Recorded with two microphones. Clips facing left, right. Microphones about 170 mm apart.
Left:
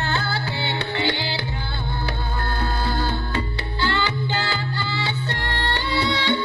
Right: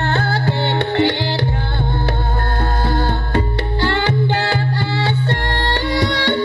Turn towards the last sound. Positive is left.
turn(degrees=-60)  # may be behind; listen again after turning